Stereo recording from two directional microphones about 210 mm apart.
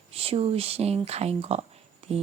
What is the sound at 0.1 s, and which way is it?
A woman's voice, 25° right (ahead or behind).